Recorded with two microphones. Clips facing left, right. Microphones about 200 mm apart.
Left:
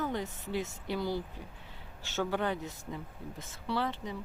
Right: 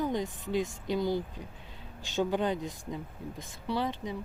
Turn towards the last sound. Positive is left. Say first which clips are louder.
# right 2 dB
turn(degrees=-15)  # may be behind; listen again after turning